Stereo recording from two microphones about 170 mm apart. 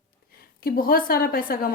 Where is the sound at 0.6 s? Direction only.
60° left (ahead or behind).